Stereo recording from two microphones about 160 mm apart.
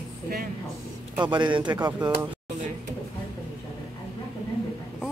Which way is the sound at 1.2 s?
30° right (ahead or behind).